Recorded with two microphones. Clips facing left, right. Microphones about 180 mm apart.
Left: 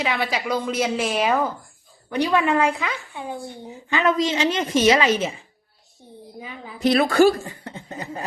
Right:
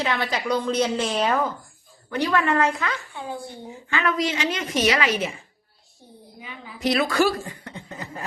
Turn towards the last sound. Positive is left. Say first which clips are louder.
# left 2 dB
turn(degrees=25)  # may be behind; listen again after turning